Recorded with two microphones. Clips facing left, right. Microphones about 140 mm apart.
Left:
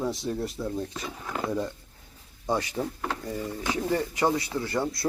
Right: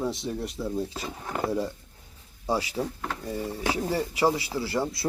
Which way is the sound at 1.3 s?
30° right (ahead or behind).